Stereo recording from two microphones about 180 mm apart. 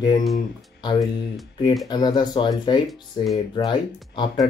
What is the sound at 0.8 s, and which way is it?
Speech, 25° left (ahead or behind).